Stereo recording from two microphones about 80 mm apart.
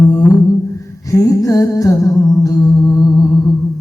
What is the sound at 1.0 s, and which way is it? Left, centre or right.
Music, left.